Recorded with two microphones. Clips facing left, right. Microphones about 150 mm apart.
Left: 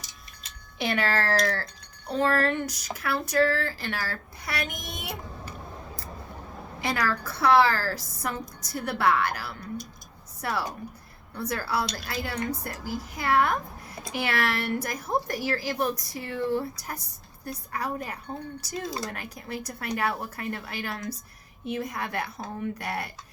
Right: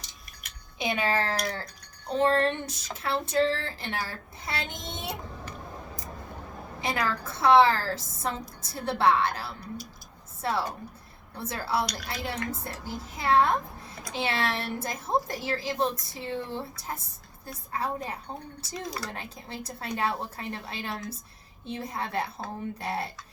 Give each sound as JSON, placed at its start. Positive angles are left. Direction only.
{"t": 0.8, "sound": "a woman's voice", "side_deg": -20}
{"t": 6.8, "sound": "a woman's voice", "side_deg": -25}
{"t": 18.9, "sound": "speech", "side_deg": 25}
{"t": 19.1, "sound": "a woman's voice", "side_deg": -25}